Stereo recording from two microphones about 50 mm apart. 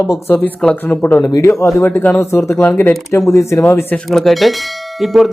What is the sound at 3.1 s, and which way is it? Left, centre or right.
Speech, left.